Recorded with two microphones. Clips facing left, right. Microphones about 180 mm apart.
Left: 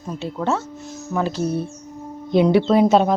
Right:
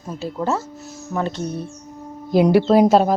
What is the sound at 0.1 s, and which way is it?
Speech, centre (ahead or behind).